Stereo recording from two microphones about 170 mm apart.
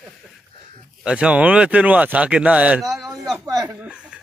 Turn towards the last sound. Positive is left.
turn(degrees=-5)  # may be behind; listen again after turning